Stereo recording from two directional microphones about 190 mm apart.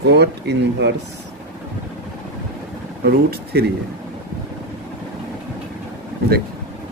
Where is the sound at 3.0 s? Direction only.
55° right (ahead or behind).